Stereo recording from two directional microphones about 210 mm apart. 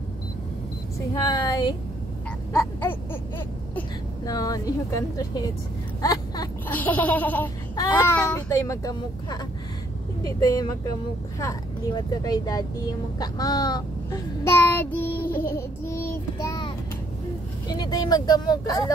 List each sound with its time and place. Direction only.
1.1 s speech: 20° left (ahead or behind)
6.7 s speech: 10° left (ahead or behind)
13.2 s child singing: 20° left (ahead or behind)
17.6 s speech: 20° left (ahead or behind)